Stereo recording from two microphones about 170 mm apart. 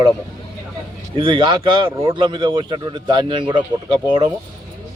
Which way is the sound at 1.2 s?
30° right (ahead or behind).